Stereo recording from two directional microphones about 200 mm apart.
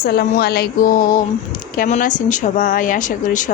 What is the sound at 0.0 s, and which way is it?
Music, 50° left (ahead or behind).